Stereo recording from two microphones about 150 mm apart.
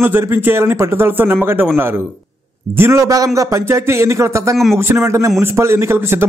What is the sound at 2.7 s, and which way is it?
A man's voice, 15° right (ahead or behind).